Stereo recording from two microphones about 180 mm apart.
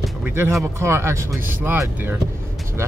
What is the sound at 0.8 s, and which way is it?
Speech, 15° right (ahead or behind).